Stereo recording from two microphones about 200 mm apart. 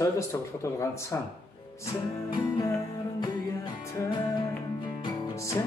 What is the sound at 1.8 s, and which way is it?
Music, 15° left (ahead or behind).